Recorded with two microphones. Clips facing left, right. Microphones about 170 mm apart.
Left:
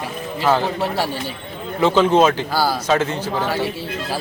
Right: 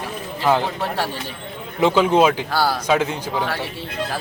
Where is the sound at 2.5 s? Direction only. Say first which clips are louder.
Left 1 dB; centre (ahead or behind).